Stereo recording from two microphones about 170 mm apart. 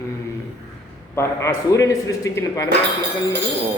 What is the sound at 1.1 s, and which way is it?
A man's voice, 15° left (ahead or behind).